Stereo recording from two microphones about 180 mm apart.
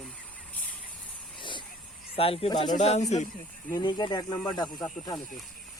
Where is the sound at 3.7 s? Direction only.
25° left (ahead or behind).